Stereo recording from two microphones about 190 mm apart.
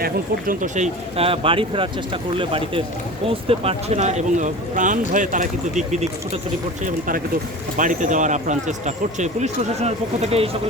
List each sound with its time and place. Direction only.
0.0 s speech: 45° right (ahead or behind)
7.8 s speech: 40° right (ahead or behind)